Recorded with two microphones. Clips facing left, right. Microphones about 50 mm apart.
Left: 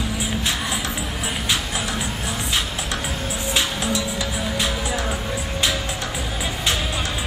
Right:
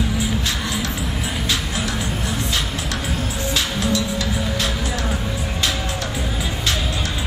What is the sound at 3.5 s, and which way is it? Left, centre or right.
Music, left.